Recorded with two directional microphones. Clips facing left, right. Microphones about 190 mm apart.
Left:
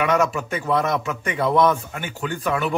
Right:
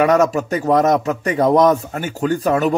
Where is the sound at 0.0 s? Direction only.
40° right (ahead or behind).